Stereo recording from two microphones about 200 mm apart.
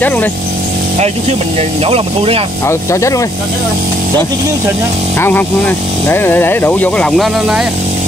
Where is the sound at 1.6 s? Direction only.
30° right (ahead or behind).